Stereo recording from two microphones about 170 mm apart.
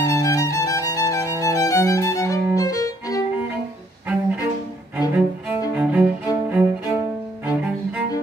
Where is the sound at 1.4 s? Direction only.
20° left (ahead or behind).